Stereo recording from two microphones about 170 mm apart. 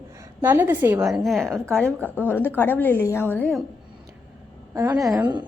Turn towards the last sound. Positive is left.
turn(degrees=-25)  # may be behind; listen again after turning